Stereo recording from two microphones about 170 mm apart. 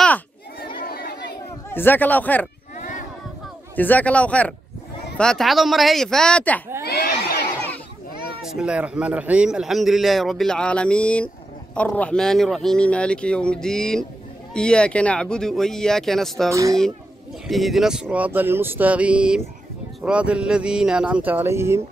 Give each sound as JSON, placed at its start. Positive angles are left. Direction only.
{"t": 0.6, "sound": "crowd", "side_deg": 65}
{"t": 1.7, "sound": "speech", "side_deg": 10}
{"t": 2.8, "sound": "a sound", "side_deg": 50}
{"t": 3.7, "sound": "a man's voice", "side_deg": 10}
{"t": 6.8, "sound": "crowd", "side_deg": 65}
{"t": 8.4, "sound": "a man's voice", "side_deg": -5}
{"t": 16.4, "sound": "speech", "side_deg": -20}
{"t": 17.5, "sound": "speech", "side_deg": 0}